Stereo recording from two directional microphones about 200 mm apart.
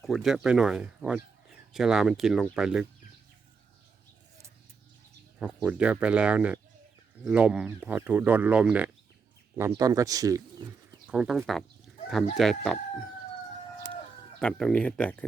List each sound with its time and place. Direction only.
0.0 s speech: centre (ahead or behind)
5.6 s speech: 5° right (ahead or behind)
11.0 s speech: 5° right (ahead or behind)
13.9 s chicken: 5° left (ahead or behind)